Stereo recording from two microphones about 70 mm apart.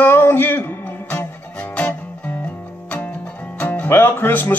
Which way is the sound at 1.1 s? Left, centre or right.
Left.